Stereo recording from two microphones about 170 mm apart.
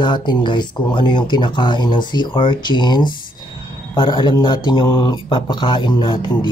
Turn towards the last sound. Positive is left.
turn(degrees=30)  # may be behind; listen again after turning